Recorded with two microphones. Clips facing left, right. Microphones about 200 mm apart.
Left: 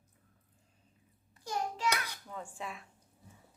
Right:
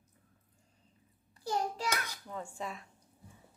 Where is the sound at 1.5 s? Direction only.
40° right (ahead or behind).